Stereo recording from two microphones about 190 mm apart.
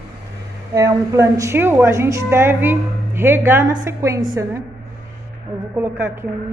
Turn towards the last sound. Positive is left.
turn(degrees=-10)  # may be behind; listen again after turning